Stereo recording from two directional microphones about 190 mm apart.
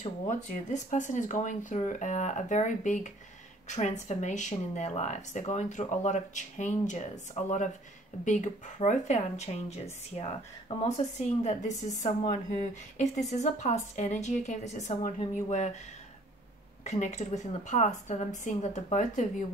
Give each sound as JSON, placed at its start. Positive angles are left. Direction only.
{"t": 0.0, "sound": "speech", "side_deg": 40}
{"t": 10.8, "sound": "speech", "side_deg": 35}
{"t": 16.8, "sound": "speech", "side_deg": 35}